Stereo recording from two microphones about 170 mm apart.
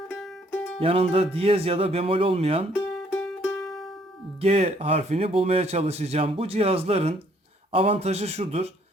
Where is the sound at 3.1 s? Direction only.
5° left (ahead or behind).